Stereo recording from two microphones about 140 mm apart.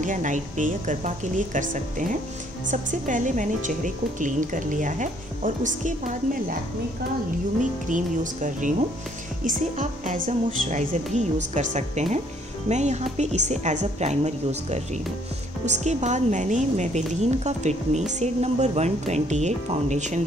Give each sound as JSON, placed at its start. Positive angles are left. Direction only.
{"t": 0.0, "sound": "a woman's voice", "side_deg": -65}
{"t": 7.9, "sound": "a woman's voice", "side_deg": -65}
{"t": 11.1, "sound": "a woman's voice", "side_deg": -60}